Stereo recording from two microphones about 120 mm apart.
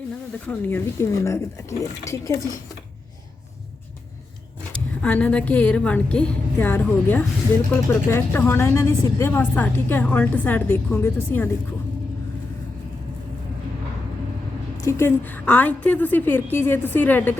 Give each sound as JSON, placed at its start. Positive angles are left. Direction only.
{"t": 0.7, "sound": "speech", "side_deg": 25}
{"t": 5.0, "sound": "speech", "side_deg": 10}
{"t": 14.8, "sound": "speech", "side_deg": 20}